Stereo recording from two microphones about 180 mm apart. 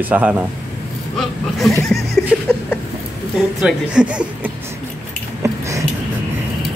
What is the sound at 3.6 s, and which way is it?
Speech, 5° right (ahead or behind).